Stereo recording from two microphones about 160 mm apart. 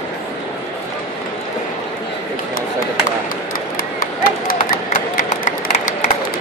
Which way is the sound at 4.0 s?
60° left (ahead or behind).